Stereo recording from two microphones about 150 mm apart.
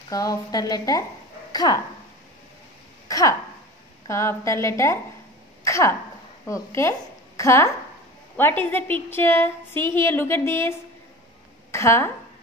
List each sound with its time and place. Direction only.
0.1 s a woman's voice: 25° left (ahead or behind)
3.1 s a woman's voice: 20° left (ahead or behind)
5.6 s a sound: 20° left (ahead or behind)
6.4 s a woman's voice: 20° left (ahead or behind)